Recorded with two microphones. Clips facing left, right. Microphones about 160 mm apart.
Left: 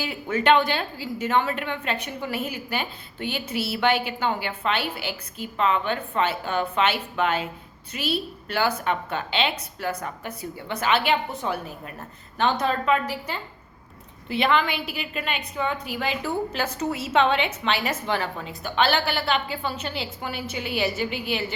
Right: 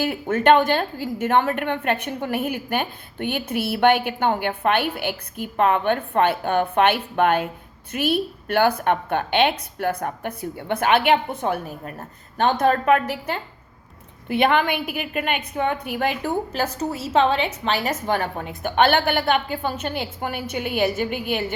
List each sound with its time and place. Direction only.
0.0 s a woman's voice: 55° right (ahead or behind)